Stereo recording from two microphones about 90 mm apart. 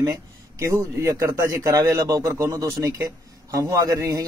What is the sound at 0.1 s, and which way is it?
A man's voice, 30° right (ahead or behind).